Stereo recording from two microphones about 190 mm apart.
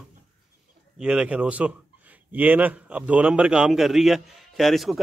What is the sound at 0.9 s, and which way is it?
A man's voice, 5° right (ahead or behind).